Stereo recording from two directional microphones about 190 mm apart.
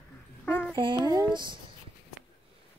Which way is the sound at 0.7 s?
25° right (ahead or behind).